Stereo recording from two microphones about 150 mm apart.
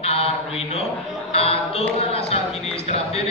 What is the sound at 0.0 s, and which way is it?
Mantra, 40° left (ahead or behind).